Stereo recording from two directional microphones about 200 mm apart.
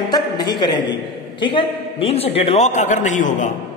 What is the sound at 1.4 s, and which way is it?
Speech, 25° left (ahead or behind).